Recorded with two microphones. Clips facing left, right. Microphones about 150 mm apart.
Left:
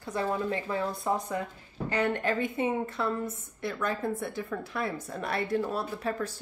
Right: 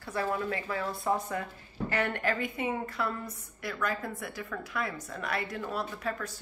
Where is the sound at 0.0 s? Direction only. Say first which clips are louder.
Left 2 dB; 20° left (ahead or behind).